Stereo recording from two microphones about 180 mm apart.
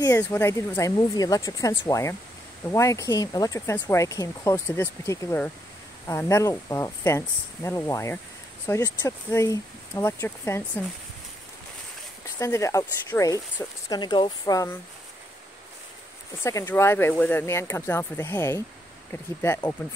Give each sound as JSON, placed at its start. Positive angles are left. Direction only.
{"t": 0.2, "sound": "speech", "side_deg": 15}
{"t": 12.4, "sound": "speech", "side_deg": 15}
{"t": 16.4, "sound": "speech", "side_deg": 15}